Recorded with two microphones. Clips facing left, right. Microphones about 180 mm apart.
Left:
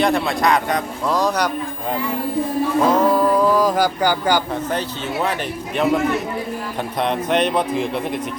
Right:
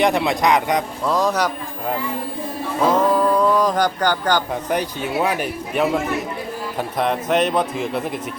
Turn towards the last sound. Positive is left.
turn(degrees=-5)  # may be behind; listen again after turning